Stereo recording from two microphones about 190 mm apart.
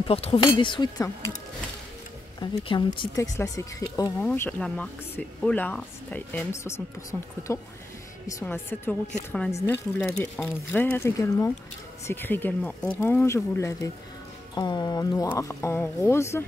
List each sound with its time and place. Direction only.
0.1 s speech: 30° left (ahead or behind)
2.4 s speech: 25° left (ahead or behind)